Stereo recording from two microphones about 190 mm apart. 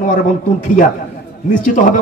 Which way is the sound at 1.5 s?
40° left (ahead or behind).